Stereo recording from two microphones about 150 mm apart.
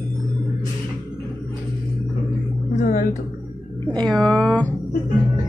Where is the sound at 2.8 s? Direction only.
70° left (ahead or behind).